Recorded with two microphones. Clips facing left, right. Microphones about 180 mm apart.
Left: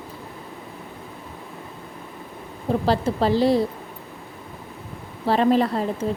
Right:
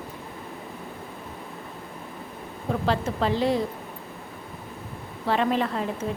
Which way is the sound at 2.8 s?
35° left (ahead or behind).